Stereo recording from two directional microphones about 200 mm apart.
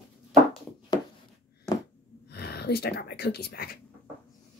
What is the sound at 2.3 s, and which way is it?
Speech, 55° left (ahead or behind).